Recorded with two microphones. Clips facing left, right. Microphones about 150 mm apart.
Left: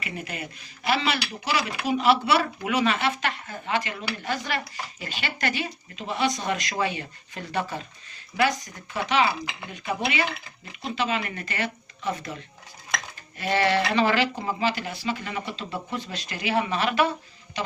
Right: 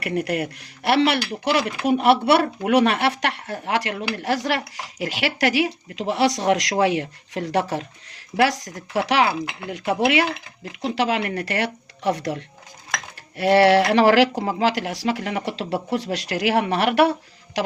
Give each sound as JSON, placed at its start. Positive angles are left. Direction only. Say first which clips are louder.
{"t": 0.0, "sound": "speech", "louder": "right 11 dB", "side_deg": -75}
{"t": 9.6, "sound": "speech", "louder": "right 8 dB", "side_deg": -85}
{"t": 10.8, "sound": "speech", "louder": "right 6 dB", "side_deg": -75}